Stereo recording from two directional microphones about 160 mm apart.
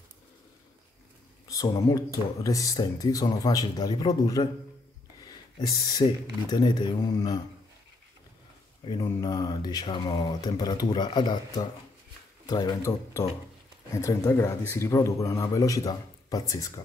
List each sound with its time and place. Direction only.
1.5 s speech: 20° left (ahead or behind)
5.2 s a sound: 25° left (ahead or behind)
6.5 s speech: 25° left (ahead or behind)
9.0 s speech: 25° left (ahead or behind)